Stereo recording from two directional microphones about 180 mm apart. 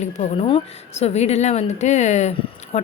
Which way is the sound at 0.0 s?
35° left (ahead or behind).